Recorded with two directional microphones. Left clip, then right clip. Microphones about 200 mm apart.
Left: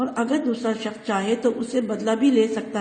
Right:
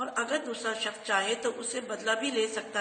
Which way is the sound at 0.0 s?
30° left (ahead or behind).